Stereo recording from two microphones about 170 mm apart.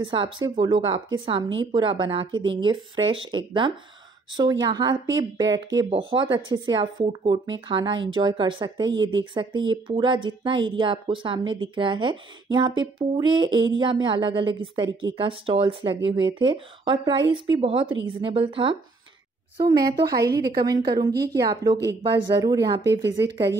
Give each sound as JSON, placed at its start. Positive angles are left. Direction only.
{"t": 0.0, "sound": "speech", "side_deg": -30}
{"t": 21.7, "sound": "speech", "side_deg": -80}
{"t": 22.4, "sound": "speech", "side_deg": -20}
{"t": 22.8, "sound": "a woman's voice", "side_deg": -90}